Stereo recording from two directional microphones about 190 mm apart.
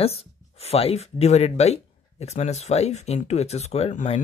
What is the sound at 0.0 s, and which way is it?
Speech, 30° left (ahead or behind).